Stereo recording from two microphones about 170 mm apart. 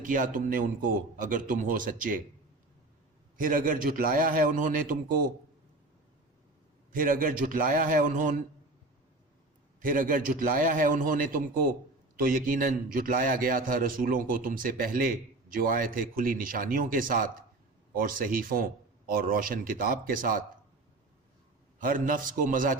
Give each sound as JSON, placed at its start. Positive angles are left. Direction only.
{"t": 0.0, "sound": "a man's voice", "side_deg": -50}
{"t": 3.3, "sound": "a man's voice", "side_deg": -50}
{"t": 6.9, "sound": "a man's voice", "side_deg": -55}
{"t": 9.8, "sound": "a man's voice", "side_deg": -55}
{"t": 21.8, "sound": "a man's voice", "side_deg": -55}